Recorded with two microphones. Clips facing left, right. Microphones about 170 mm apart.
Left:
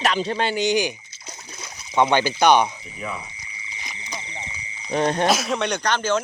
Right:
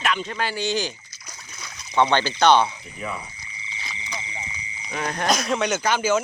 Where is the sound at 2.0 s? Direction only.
15° left (ahead or behind).